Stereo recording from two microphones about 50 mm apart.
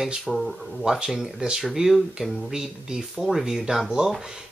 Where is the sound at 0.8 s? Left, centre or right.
Centre.